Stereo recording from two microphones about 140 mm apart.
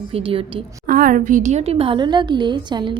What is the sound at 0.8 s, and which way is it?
A woman's voice, 80° right.